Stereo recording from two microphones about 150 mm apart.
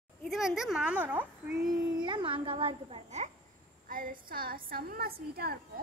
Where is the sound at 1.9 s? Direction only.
30° right (ahead or behind).